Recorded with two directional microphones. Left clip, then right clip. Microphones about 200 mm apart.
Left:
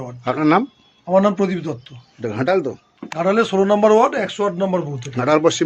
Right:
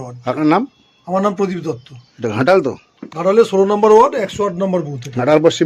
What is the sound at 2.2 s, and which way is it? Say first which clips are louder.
Speech: right 6 dB; 35° right (ahead or behind).